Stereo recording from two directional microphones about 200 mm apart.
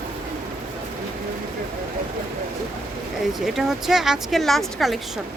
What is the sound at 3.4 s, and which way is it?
Speech, centre (ahead or behind).